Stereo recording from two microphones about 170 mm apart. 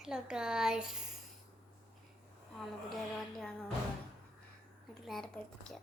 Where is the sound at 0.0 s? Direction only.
5° right (ahead or behind).